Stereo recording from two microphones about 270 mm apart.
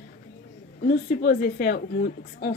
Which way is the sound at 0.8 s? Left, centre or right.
Left.